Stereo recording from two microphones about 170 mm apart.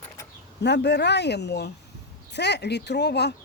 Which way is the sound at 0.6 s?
85° left.